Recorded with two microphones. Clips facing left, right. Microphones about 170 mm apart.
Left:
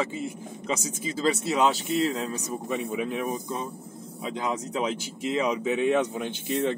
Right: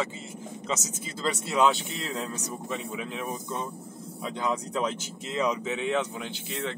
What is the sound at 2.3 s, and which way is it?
Speech, 15° left (ahead or behind).